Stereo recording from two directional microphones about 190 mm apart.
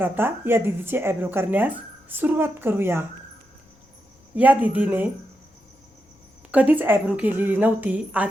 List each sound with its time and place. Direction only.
0.0 s speech: 10° right (ahead or behind)
4.4 s speech: 10° right (ahead or behind)
6.5 s speech: 10° right (ahead or behind)